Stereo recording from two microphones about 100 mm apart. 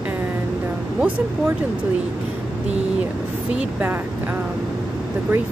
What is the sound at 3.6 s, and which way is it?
Speech, 20° right (ahead or behind).